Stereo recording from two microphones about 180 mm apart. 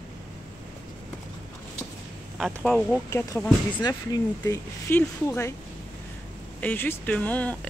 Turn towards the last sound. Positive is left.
turn(degrees=10)  # may be behind; listen again after turning